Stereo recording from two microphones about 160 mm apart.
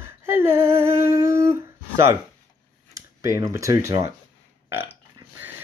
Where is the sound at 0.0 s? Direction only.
15° right (ahead or behind).